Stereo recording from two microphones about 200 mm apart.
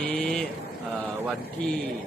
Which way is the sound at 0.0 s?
5° left (ahead or behind).